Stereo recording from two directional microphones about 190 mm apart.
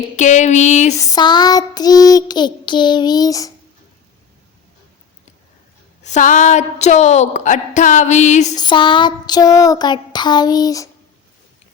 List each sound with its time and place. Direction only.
0.2 s speech: 40° left (ahead or behind)
0.9 s child singing: 20° left (ahead or behind)
6.0 s speech: 40° left (ahead or behind)
8.5 s child singing: 25° left (ahead or behind)